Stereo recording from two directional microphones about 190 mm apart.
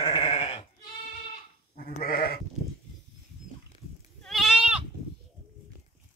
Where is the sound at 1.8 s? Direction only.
50° left (ahead or behind).